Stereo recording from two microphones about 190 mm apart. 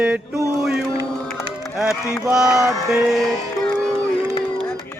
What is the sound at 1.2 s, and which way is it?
Music, centre (ahead or behind).